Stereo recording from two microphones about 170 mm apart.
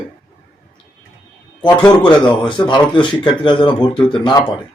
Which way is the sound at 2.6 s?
30° left (ahead or behind).